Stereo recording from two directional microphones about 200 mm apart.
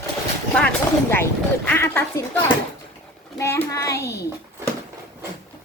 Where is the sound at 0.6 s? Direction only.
5° left (ahead or behind).